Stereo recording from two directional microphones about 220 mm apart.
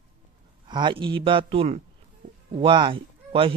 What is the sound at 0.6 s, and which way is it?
Speech, 20° right (ahead or behind).